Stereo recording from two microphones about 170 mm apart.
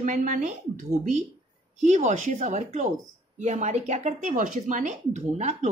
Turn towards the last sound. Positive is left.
turn(degrees=-40)  # may be behind; listen again after turning